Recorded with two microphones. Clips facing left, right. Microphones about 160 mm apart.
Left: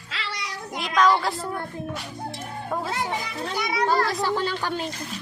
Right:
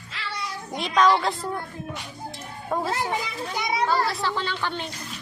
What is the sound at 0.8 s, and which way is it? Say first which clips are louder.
Speech: even; centre (ahead or behind).